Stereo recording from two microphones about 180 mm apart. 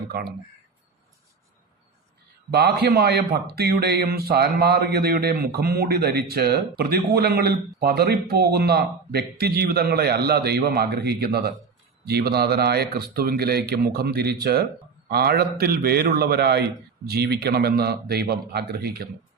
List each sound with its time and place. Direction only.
0.1 s speech: 60° right (ahead or behind)
2.5 s speech: 65° right (ahead or behind)